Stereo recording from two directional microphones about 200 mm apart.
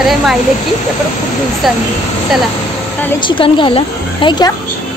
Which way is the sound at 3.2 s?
25° left (ahead or behind).